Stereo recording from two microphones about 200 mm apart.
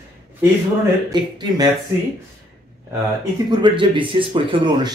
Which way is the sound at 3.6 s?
25° right (ahead or behind).